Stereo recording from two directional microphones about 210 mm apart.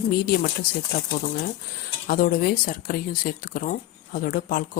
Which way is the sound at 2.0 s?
45° left (ahead or behind).